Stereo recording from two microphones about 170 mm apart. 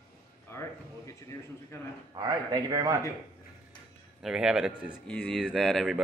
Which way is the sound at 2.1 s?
25° right (ahead or behind).